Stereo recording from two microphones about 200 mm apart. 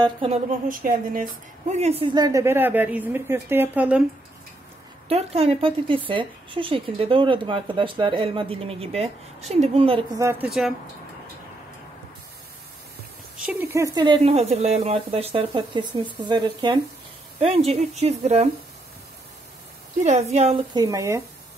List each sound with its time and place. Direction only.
0.0 s speech: 25° right (ahead or behind)
0.7 s speech: 45° right (ahead or behind)
1.7 s speech: 30° right (ahead or behind); by 4.0 s 5° right (ahead or behind)
5.0 s speech: 30° right (ahead or behind)
10.1 s speech: 15° right (ahead or behind)
13.4 s speech: 5° right (ahead or behind)
13.9 s speech: 20° right (ahead or behind)
20.0 s speech: 35° right (ahead or behind); by 21.2 s 15° right (ahead or behind)